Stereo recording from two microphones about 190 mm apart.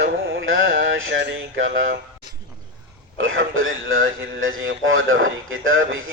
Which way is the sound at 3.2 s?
90° right.